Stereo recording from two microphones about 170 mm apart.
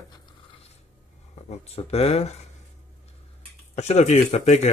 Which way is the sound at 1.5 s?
40° left (ahead or behind).